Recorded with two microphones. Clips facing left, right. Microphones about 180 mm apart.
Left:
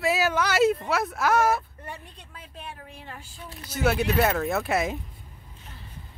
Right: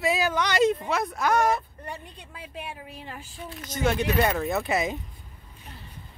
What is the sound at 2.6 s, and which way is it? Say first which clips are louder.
Speech: right 2 dB; 15° right (ahead or behind).